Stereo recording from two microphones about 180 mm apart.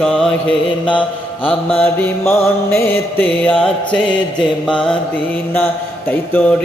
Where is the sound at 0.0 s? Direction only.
Centre (ahead or behind).